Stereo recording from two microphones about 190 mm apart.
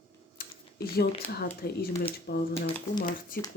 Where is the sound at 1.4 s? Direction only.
55° left (ahead or behind).